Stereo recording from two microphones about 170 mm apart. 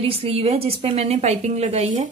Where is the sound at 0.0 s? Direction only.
35° right (ahead or behind).